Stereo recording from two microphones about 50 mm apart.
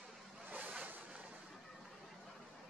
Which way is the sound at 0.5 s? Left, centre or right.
Right.